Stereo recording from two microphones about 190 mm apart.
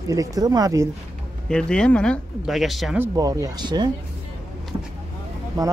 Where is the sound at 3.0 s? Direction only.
20° right (ahead or behind).